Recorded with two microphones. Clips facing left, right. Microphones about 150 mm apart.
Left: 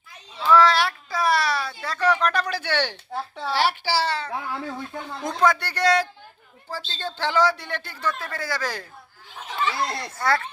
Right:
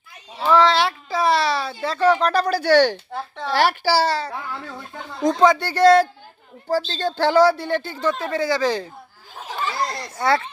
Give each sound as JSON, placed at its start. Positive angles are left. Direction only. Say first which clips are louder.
{"t": 0.5, "sound": "a sound", "louder": "right 1 dB", "side_deg": -25}
{"t": 3.1, "sound": "a woman's voice", "louder": "right 1 dB", "side_deg": 5}
{"t": 3.5, "sound": "a woman's voice", "louder": "right 5 dB", "side_deg": -45}
{"t": 5.2, "sound": "a woman's voice", "louder": "right 6 dB", "side_deg": -20}
{"t": 9.3, "sound": "a sound", "louder": "even", "side_deg": -40}
{"t": 10.2, "sound": "speech", "louder": "right 4 dB", "side_deg": -25}